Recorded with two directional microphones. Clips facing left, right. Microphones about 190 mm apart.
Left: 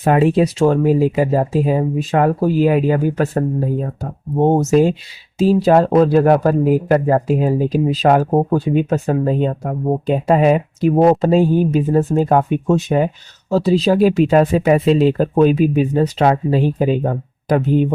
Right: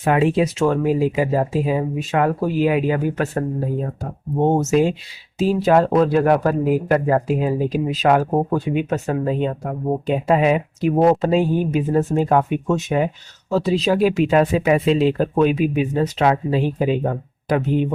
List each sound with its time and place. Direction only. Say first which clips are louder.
0.0 s speech: left 3 dB; 40° left (ahead or behind)
4.4 s speech: left 3 dB; 35° left (ahead or behind)